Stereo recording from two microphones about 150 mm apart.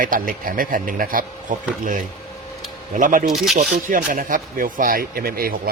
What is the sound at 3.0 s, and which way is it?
A man's voice, 65° right (ahead or behind).